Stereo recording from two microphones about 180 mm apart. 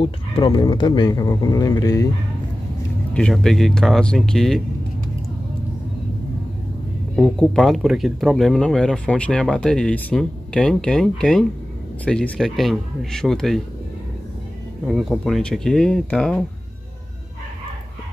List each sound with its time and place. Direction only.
0.0 s speech: 30° left (ahead or behind)
3.2 s speech: 5° left (ahead or behind)
7.2 s speech: centre (ahead or behind)
14.9 s speech: centre (ahead or behind)